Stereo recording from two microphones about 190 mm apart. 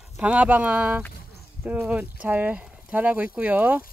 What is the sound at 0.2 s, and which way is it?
Speech, 5° right (ahead or behind).